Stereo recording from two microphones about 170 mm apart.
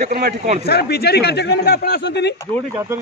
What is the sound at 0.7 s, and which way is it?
Speech, 70° left (ahead or behind).